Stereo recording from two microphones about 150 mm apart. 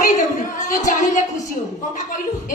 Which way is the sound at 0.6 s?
60° left (ahead or behind).